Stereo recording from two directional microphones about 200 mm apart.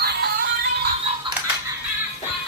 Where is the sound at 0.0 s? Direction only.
50° right (ahead or behind).